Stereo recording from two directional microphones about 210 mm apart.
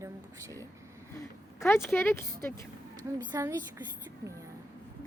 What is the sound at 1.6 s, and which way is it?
Speech, 10° left (ahead or behind).